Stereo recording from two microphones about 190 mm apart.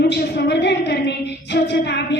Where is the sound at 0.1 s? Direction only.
65° left (ahead or behind).